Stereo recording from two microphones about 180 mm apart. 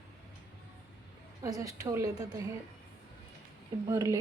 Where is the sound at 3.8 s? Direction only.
20° right (ahead or behind).